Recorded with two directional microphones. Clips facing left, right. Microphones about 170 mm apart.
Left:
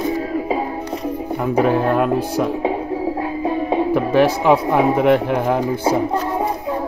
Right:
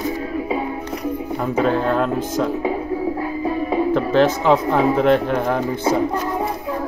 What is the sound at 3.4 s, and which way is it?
Music, 25° left (ahead or behind).